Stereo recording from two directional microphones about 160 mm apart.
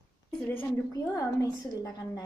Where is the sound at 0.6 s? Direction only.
15° left (ahead or behind).